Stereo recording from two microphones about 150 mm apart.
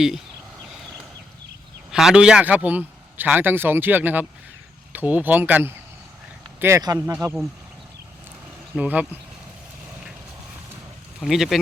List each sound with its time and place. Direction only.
1.9 s a man's voice: 5° right (ahead or behind); by 7.4 s 25° right (ahead or behind)
8.7 s a man's voice: 10° right (ahead or behind)
11.2 s speech: centre (ahead or behind)